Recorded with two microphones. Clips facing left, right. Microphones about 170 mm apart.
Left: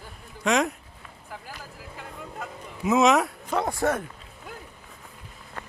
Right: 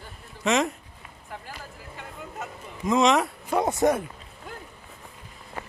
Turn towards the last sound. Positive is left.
turn(degrees=-10)  # may be behind; listen again after turning